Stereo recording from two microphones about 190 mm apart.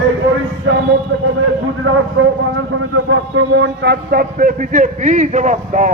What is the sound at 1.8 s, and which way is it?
A man's voice, 90° right.